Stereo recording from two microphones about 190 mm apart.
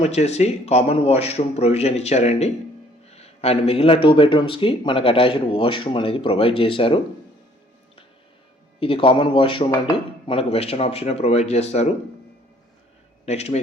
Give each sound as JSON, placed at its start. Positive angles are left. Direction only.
{"t": 0.0, "sound": "a man's voice", "side_deg": 35}
{"t": 8.8, "sound": "a man's voice", "side_deg": 30}
{"t": 13.2, "sound": "a man's voice", "side_deg": 35}